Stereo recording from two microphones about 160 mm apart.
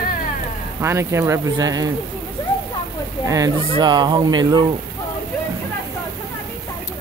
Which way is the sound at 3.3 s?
25° right (ahead or behind).